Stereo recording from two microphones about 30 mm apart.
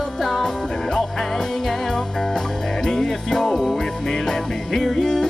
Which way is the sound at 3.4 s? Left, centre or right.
Centre.